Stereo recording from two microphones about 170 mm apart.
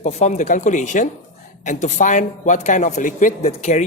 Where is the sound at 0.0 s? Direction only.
40° left (ahead or behind).